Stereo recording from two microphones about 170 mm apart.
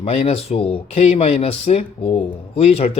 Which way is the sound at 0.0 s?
35° left (ahead or behind).